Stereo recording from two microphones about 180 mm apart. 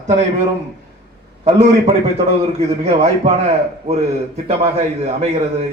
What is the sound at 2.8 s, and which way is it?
Speech, 35° right (ahead or behind).